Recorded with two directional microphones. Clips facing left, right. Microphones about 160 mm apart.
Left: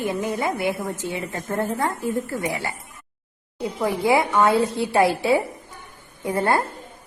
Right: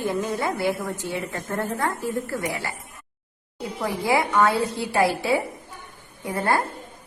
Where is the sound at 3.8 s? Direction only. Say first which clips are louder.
Left 3 dB; 20° left (ahead or behind).